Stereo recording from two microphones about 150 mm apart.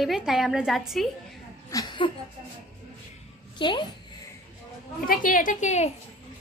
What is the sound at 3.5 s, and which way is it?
Speech, 30° left (ahead or behind).